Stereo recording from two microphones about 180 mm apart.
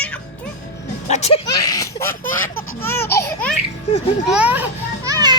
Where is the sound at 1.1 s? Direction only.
35° left (ahead or behind).